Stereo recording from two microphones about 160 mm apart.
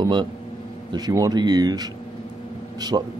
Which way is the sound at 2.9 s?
25° right (ahead or behind).